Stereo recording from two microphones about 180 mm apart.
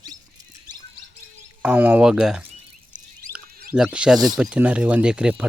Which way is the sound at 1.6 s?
10° right (ahead or behind).